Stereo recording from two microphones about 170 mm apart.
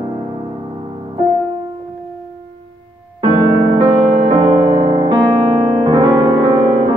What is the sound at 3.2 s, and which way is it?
Music, 25° right (ahead or behind).